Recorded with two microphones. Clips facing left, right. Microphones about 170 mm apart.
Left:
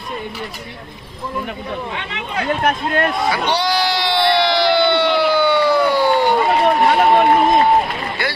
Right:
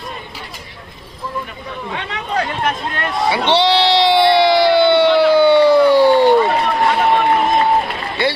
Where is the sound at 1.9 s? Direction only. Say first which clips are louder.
Right 3 dB; 40° right (ahead or behind).